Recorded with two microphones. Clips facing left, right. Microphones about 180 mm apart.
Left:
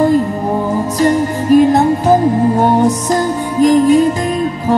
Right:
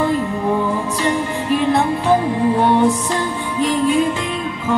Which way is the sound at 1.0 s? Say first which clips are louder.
Left 8 dB; 40° left (ahead or behind).